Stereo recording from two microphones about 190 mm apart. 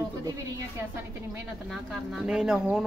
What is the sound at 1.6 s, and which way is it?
Speech, centre (ahead or behind).